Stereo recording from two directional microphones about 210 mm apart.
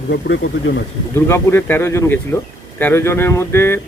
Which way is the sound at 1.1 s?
10° left (ahead or behind).